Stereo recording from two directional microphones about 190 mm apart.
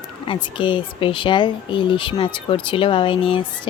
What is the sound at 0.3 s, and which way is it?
Speech, 25° left (ahead or behind).